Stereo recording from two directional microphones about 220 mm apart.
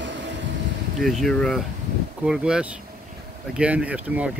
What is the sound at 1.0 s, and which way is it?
Speech, centre (ahead or behind).